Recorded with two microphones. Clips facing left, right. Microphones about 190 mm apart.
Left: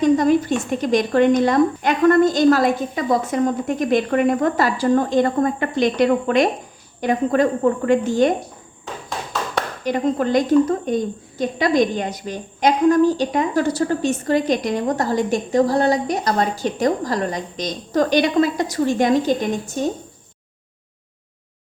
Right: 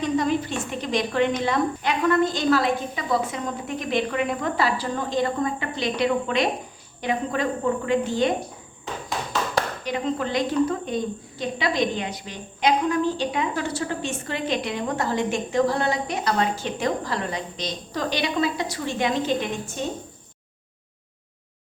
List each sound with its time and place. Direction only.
0.0 s a woman's voice: 45° left (ahead or behind)
9.8 s a woman's voice: 45° left (ahead or behind)